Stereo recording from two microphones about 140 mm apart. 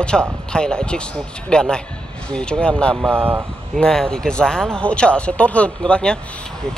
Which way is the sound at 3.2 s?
15° right (ahead or behind).